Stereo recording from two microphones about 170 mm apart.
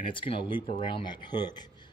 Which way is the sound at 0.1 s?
30° left (ahead or behind).